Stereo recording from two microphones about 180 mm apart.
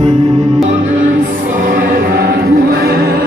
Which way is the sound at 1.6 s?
50° right (ahead or behind).